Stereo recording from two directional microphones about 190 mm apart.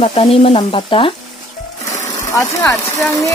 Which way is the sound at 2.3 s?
15° left (ahead or behind).